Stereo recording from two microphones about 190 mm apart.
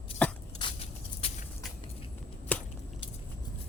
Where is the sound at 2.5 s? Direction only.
10° left (ahead or behind).